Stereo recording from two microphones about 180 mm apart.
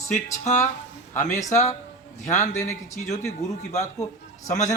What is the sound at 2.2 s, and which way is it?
Speech, 40° left (ahead or behind).